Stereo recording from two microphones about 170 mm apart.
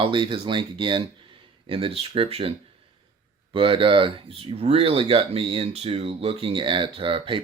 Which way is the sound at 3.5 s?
30° right (ahead or behind).